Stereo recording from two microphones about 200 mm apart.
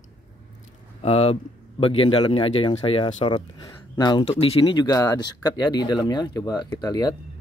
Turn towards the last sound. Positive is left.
turn(degrees=20)  # may be behind; listen again after turning